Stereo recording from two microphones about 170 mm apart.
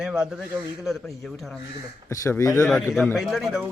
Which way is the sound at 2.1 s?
20° left (ahead or behind).